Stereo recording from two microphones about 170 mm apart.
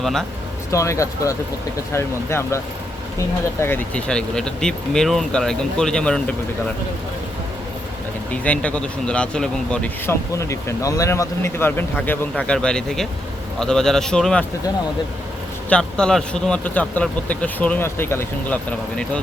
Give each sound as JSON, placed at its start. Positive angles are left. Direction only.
{"t": 0.0, "sound": "speech", "side_deg": 0}
{"t": 0.7, "sound": "speech", "side_deg": 20}
{"t": 3.6, "sound": "speech", "side_deg": 10}
{"t": 8.3, "sound": "speech", "side_deg": 5}
{"t": 15.7, "sound": "speech", "side_deg": 5}